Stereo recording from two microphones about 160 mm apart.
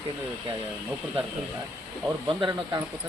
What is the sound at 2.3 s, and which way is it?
Speech, 25° right (ahead or behind).